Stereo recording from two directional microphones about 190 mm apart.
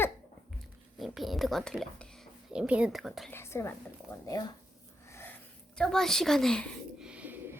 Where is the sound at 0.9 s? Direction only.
Centre (ahead or behind).